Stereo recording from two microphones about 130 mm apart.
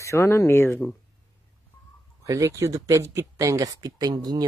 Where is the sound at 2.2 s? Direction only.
25° right (ahead or behind).